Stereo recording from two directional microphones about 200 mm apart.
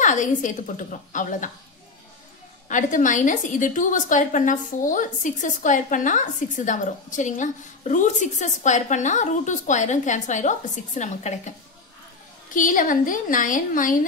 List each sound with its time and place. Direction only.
0.0 s a woman's voice: 40° left (ahead or behind)
2.7 s a woman's voice: 40° left (ahead or behind)
12.5 s a woman's voice: 40° left (ahead or behind)